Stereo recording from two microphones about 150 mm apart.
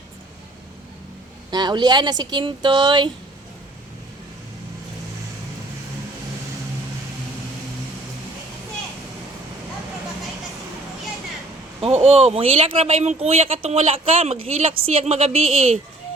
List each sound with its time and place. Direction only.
1.5 s speech: 30° right (ahead or behind)
12.0 s speech: 40° right (ahead or behind)